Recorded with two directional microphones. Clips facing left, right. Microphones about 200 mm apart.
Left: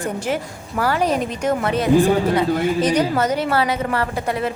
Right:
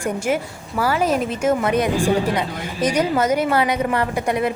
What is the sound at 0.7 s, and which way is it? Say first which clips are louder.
Speech: even; 10° right (ahead or behind).